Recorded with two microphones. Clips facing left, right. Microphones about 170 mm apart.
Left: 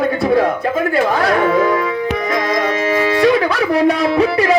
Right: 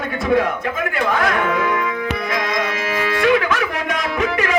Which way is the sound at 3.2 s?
35° left (ahead or behind).